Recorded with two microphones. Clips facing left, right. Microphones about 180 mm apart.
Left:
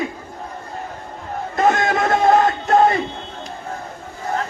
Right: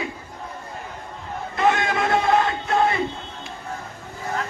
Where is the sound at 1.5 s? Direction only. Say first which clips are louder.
Left 3 dB; 45° left (ahead or behind).